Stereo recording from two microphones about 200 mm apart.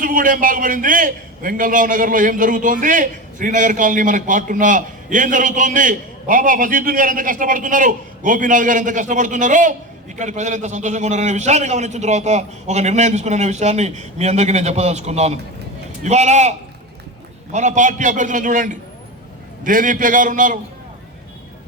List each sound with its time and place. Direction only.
0.0 s a man's voice: 45° right (ahead or behind)